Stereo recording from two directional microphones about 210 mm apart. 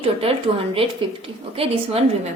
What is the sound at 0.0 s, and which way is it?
Speech, 25° right (ahead or behind).